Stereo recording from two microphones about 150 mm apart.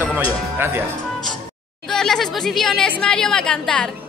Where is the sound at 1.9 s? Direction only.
5° left (ahead or behind).